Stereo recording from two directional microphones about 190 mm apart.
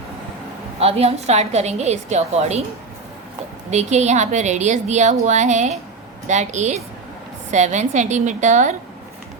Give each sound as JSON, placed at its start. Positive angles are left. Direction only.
{"t": 0.8, "sound": "a woman's voice", "side_deg": -30}
{"t": 3.7, "sound": "a woman's voice", "side_deg": -35}